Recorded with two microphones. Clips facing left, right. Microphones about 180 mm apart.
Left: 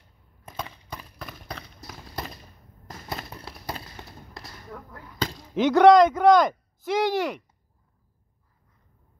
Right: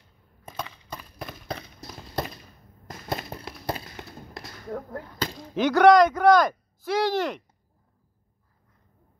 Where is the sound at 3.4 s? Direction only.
20° right (ahead or behind).